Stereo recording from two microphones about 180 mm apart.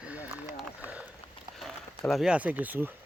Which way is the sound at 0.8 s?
10° right (ahead or behind).